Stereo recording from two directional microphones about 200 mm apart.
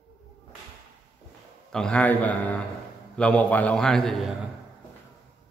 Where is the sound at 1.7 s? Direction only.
5° left (ahead or behind).